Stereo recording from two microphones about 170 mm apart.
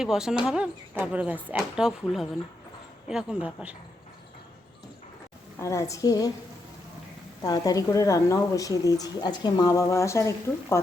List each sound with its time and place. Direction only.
0.0 s speech: 5° right (ahead or behind)
5.5 s speech: 20° left (ahead or behind)
7.4 s speech: 20° left (ahead or behind)